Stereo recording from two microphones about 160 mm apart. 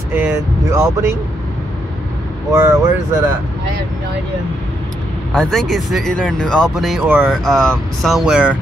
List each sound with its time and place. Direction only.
0.1 s speech: 15° right (ahead or behind)
2.5 s speech: 20° right (ahead or behind)
5.3 s speech: 5° left (ahead or behind)